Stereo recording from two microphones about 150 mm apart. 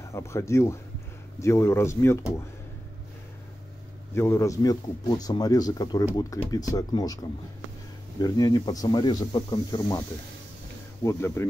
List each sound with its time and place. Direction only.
0.1 s a man's voice: 20° left (ahead or behind)
4.1 s a man's voice: 20° left (ahead or behind)
8.2 s a man's voice: 25° left (ahead or behind)
11.1 s speech: 15° left (ahead or behind)